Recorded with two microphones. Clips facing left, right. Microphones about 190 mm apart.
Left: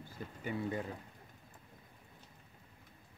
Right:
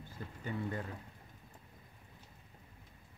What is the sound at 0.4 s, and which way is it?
Speech, 15° left (ahead or behind).